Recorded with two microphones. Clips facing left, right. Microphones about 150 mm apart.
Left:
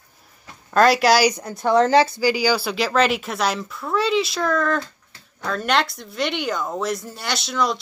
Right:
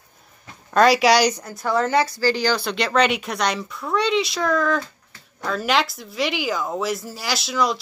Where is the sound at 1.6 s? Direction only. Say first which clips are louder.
Left 4 dB; 25° left (ahead or behind).